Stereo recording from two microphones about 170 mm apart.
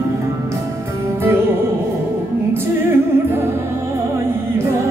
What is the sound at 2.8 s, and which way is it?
Music, 15° right (ahead or behind).